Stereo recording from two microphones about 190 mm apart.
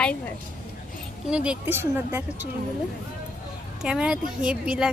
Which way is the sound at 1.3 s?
5° right (ahead or behind).